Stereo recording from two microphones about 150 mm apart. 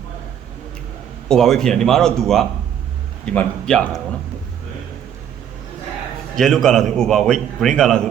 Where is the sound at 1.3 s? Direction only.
5° left (ahead or behind).